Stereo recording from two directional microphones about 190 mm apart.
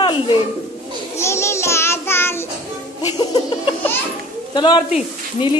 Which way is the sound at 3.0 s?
20° left (ahead or behind).